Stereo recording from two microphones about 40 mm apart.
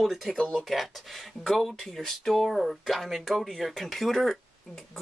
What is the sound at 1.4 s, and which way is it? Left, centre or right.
Speech, centre.